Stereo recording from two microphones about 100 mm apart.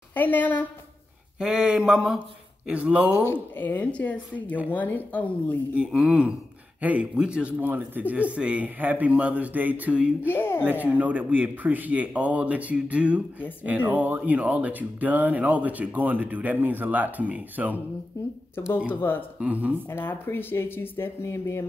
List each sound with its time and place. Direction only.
0.1 s speech: 20° left (ahead or behind)
1.4 s speech: 10° right (ahead or behind)
3.5 s speech: 20° left (ahead or behind)
5.8 s speech: 5° right (ahead or behind)
10.2 s speech: 20° left (ahead or behind)
10.6 s speech: 15° right (ahead or behind)
18.1 s speech: 30° left (ahead or behind)
19.4 s speech: 15° right (ahead or behind)
19.9 s speech: 25° left (ahead or behind)